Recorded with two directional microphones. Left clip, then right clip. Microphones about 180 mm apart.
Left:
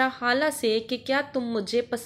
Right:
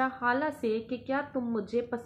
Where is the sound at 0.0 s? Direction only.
25° left (ahead or behind).